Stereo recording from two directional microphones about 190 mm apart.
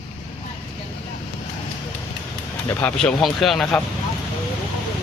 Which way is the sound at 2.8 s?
10° left (ahead or behind).